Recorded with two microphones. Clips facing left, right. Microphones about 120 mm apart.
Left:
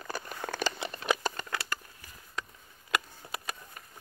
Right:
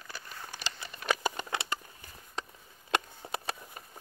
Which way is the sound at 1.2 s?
15° right (ahead or behind).